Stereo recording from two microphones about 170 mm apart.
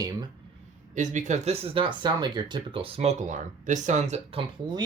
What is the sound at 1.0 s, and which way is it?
Speech, 45° right (ahead or behind).